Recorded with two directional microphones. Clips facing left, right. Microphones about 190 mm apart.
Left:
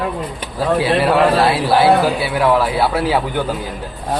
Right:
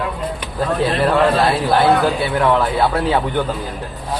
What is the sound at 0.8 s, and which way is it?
Speech, 5° left (ahead or behind).